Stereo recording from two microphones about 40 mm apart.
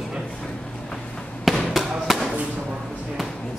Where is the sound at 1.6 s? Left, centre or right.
Centre.